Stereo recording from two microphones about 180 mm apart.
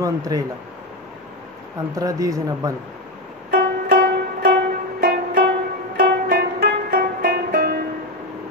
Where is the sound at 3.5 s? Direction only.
60° right (ahead or behind).